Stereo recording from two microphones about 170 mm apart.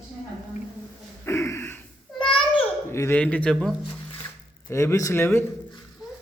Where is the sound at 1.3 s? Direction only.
15° left (ahead or behind).